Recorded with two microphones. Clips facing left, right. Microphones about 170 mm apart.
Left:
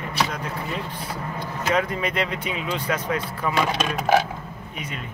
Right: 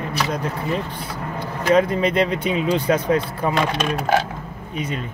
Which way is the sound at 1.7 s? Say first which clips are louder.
Right 7 dB; 30° right (ahead or behind).